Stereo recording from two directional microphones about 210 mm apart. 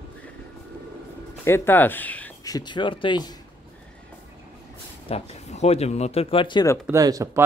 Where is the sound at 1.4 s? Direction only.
10° left (ahead or behind).